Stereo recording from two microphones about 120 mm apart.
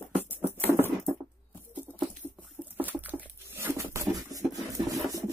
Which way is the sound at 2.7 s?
15° right (ahead or behind).